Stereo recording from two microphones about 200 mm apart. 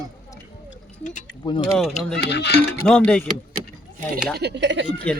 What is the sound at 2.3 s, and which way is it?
Speech, 60° left (ahead or behind).